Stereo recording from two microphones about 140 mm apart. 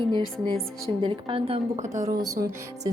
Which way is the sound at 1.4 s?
55° right (ahead or behind).